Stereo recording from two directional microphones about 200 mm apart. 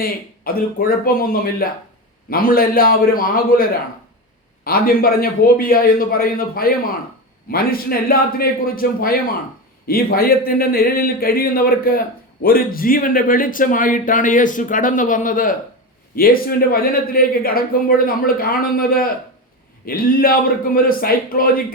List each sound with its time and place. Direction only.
0.0 s speech: 45° left (ahead or behind)